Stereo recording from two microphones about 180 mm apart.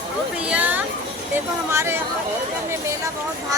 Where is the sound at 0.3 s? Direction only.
5° right (ahead or behind).